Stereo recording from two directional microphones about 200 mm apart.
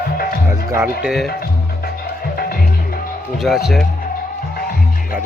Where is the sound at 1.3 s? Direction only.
50° left (ahead or behind).